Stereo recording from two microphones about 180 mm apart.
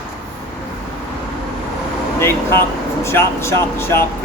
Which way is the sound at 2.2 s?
15° left (ahead or behind).